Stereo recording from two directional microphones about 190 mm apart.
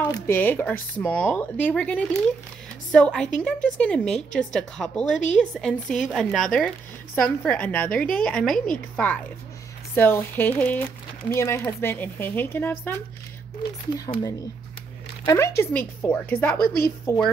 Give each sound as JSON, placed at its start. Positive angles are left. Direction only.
{"t": 0.1, "sound": "a woman's voice", "side_deg": 10}
{"t": 13.9, "sound": "a woman's voice", "side_deg": 20}
{"t": 16.5, "sound": "a woman's voice", "side_deg": 55}